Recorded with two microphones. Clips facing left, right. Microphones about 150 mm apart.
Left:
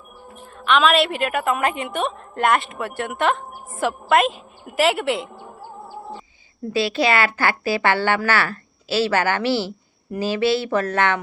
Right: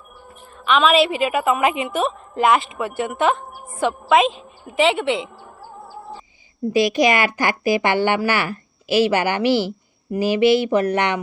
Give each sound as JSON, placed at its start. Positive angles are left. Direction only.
{"t": 0.6, "sound": "speech", "side_deg": 0}
{"t": 6.7, "sound": "speech", "side_deg": -15}